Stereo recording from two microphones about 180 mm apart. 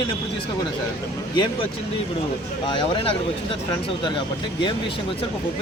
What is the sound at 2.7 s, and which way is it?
Speech, 30° left (ahead or behind).